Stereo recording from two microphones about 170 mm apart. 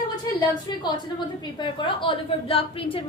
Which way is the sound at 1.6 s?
30° left (ahead or behind).